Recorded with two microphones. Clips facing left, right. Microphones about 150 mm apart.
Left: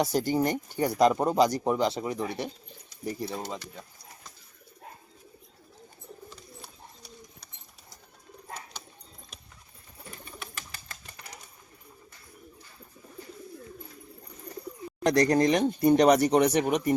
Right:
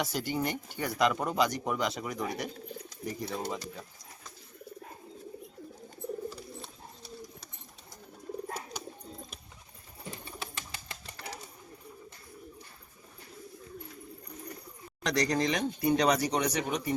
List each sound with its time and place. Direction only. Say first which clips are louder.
0.0 s speech: left 7 dB; 40° left (ahead or behind); by 3.6 s 20° left (ahead or behind)
10.1 s bird: right 2 dB; 25° right (ahead or behind)
15.0 s speech: left 7 dB; 50° left (ahead or behind)